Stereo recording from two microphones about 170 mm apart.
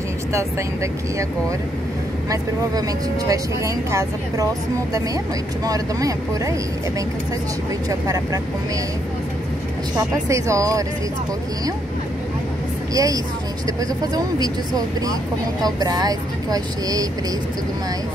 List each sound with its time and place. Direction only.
3.3 s speech: 20° right (ahead or behind)
5.7 s speech: 20° right (ahead or behind)
9.9 s speech: 20° right (ahead or behind)
12.9 s speech: 20° right (ahead or behind)